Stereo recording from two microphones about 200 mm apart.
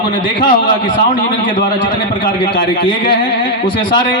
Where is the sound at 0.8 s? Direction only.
45° left (ahead or behind).